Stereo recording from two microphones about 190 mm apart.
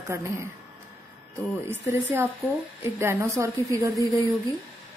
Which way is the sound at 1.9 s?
10° right (ahead or behind).